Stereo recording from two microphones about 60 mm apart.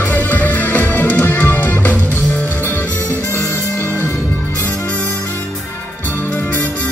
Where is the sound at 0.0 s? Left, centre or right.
Left.